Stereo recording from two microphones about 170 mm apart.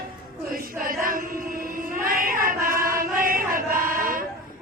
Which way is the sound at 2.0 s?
55° right (ahead or behind).